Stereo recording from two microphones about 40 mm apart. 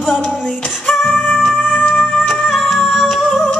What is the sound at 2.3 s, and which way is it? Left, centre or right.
Music, centre.